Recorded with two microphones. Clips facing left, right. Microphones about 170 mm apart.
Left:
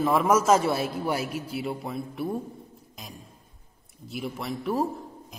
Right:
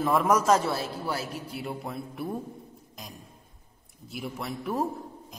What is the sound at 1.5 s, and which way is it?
Speech, centre (ahead or behind).